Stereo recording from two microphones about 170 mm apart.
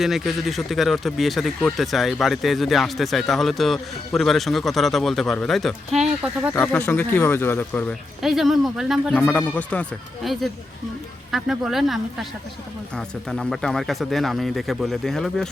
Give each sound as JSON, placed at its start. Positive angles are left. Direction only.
{"t": 0.0, "sound": "speech", "side_deg": 0}
{"t": 6.5, "sound": "speech", "side_deg": 10}
{"t": 8.2, "sound": "speech", "side_deg": 0}
{"t": 13.0, "sound": "speech", "side_deg": 5}